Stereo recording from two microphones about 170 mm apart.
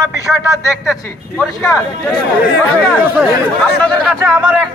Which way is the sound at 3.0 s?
15° right (ahead or behind).